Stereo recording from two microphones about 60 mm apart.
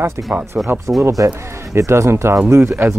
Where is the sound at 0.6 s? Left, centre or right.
Centre.